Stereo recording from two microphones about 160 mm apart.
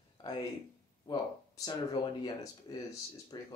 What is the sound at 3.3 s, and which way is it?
Speech, 25° left (ahead or behind).